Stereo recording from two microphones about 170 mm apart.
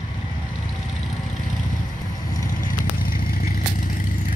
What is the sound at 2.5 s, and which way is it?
Vehicle, 55° left (ahead or behind).